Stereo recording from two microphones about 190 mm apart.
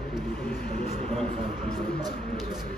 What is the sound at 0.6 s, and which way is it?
Speech, 55° left (ahead or behind).